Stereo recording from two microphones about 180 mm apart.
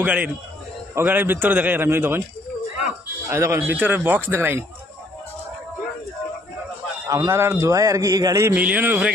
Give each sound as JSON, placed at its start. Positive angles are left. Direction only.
{"t": 0.0, "sound": "a man's voice", "side_deg": -10}
{"t": 3.3, "sound": "a man's voice", "side_deg": -15}
{"t": 7.1, "sound": "a man's voice", "side_deg": -15}